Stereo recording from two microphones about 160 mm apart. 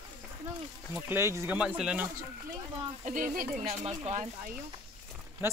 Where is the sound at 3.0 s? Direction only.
55° right (ahead or behind).